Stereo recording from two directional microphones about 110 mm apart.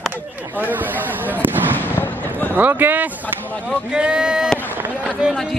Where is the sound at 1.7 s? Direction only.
20° left (ahead or behind).